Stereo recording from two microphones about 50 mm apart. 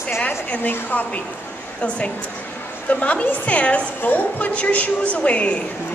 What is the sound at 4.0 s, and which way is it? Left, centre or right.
A woman's voice, left.